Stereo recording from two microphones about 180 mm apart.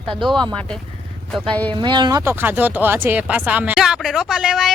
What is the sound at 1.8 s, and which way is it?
Speech, 25° right (ahead or behind).